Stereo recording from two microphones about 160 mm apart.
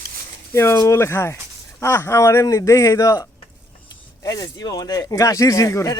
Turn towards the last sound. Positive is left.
turn(degrees=20)  # may be behind; listen again after turning